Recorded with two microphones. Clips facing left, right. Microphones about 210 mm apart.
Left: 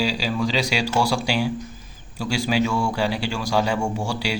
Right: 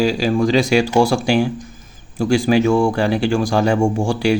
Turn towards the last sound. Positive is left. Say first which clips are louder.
# right 9 dB
turn(degrees=-50)  # may be behind; listen again after turning